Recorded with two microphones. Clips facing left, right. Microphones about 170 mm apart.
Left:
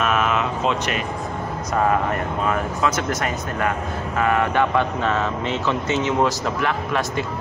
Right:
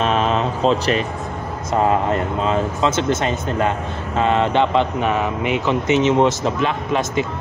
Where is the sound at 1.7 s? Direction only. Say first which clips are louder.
Right 3 dB; 25° right (ahead or behind).